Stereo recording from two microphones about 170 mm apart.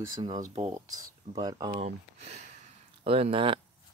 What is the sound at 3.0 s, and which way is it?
Speech, 35° right (ahead or behind).